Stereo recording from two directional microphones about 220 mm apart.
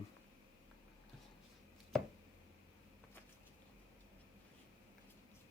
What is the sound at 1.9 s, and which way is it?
Chopping, centre (ahead or behind).